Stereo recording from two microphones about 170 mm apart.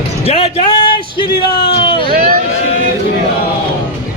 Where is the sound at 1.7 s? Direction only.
30° left (ahead or behind).